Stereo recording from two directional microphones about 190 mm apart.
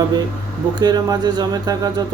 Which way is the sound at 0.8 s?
20° right (ahead or behind).